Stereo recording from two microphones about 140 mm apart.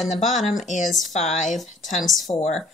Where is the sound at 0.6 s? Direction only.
60° left (ahead or behind).